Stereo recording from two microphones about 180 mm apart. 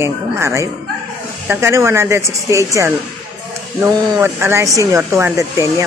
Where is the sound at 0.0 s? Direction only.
15° right (ahead or behind).